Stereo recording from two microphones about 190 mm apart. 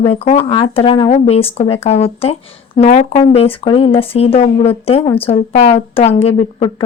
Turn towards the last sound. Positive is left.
turn(degrees=30)  # may be behind; listen again after turning